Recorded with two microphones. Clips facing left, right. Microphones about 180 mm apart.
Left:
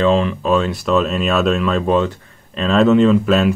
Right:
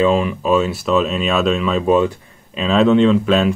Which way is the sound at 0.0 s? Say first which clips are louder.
Even; 10° right (ahead or behind).